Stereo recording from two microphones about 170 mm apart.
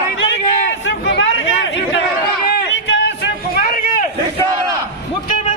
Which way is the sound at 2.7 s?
90° left.